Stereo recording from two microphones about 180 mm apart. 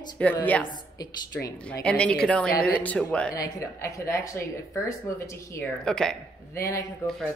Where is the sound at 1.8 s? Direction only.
5° left (ahead or behind).